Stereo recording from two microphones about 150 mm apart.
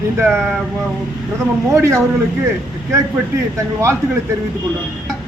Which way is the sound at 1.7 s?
20° right (ahead or behind).